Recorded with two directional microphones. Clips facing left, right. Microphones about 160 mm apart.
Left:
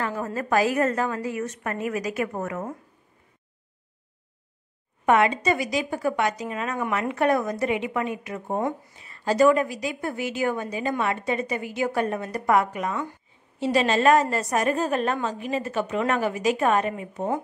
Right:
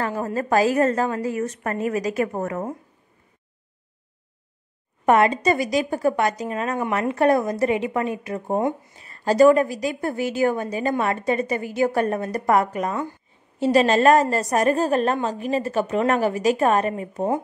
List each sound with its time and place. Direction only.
0.0 s a woman's voice: 35° right (ahead or behind)
5.0 s a woman's voice: 40° right (ahead or behind)
8.5 s speech: 25° right (ahead or behind)
9.0 s a woman's voice: 40° right (ahead or behind)